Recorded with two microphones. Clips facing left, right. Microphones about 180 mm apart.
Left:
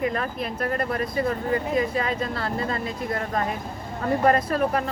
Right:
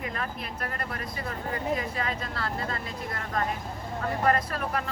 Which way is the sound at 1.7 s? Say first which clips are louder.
Left 6 dB; 20° left (ahead or behind).